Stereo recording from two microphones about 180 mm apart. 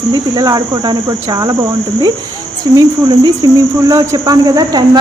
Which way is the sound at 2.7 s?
20° right (ahead or behind).